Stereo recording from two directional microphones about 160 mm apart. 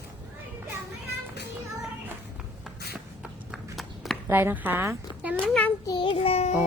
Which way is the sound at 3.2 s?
Centre (ahead or behind).